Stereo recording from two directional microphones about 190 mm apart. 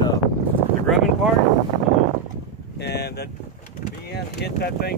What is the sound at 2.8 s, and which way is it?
Vehicle, 60° left (ahead or behind).